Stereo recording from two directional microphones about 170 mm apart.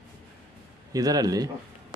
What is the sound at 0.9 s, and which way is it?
Speech, 20° right (ahead or behind).